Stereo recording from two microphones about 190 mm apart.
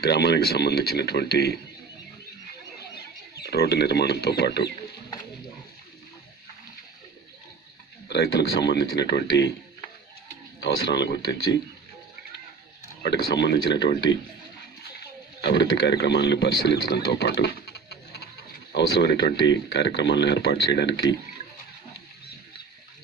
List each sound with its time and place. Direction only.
0.0 s speech: 60° left (ahead or behind)
3.3 s speech: 55° left (ahead or behind)
8.1 s speech: 60° left (ahead or behind)
10.6 s speech: 65° left (ahead or behind)
13.0 s speech: 65° left (ahead or behind)
15.0 s speech: 65° left (ahead or behind)